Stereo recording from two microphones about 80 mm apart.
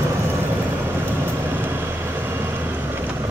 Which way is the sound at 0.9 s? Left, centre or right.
Right.